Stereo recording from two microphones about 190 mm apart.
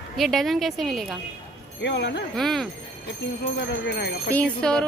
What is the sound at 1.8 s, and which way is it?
Speech, 65° left (ahead or behind).